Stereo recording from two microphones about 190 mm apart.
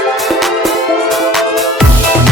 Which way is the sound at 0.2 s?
Centre (ahead or behind).